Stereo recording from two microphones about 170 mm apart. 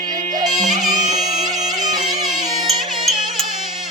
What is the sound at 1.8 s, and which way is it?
Music, 25° right (ahead or behind).